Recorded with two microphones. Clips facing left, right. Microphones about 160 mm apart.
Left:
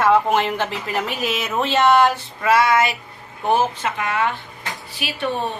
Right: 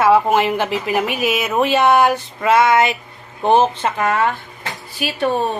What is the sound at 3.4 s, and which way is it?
A woman's voice, 30° right (ahead or behind).